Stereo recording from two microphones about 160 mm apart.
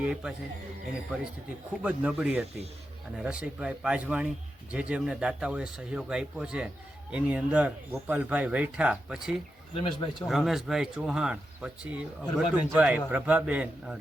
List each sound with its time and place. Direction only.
0.0 s speech: 5° right (ahead or behind)
1.8 s speech: 10° right (ahead or behind)
9.8 s a man's voice: 30° left (ahead or behind)
10.2 s speech: centre (ahead or behind)